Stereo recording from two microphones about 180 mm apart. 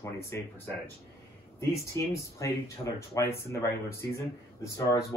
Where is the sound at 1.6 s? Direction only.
15° left (ahead or behind).